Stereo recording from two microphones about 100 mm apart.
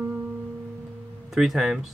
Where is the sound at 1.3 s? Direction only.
5° right (ahead or behind).